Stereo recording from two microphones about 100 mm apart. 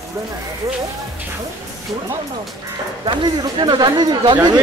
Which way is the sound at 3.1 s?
50° right (ahead or behind).